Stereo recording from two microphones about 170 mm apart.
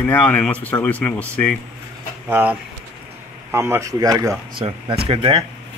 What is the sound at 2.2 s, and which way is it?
Speech, 10° right (ahead or behind).